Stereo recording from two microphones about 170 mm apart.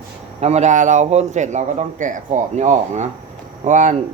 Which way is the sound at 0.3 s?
40° right (ahead or behind).